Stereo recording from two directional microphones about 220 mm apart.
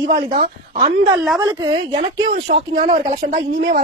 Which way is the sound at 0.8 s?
25° right (ahead or behind).